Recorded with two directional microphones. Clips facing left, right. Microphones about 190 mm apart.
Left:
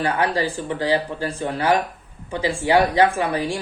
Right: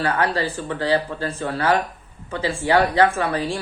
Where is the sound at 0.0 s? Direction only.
15° left (ahead or behind).